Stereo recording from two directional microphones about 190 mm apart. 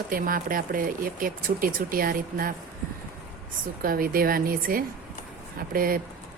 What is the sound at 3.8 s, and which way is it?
A woman's voice, 50° right (ahead or behind).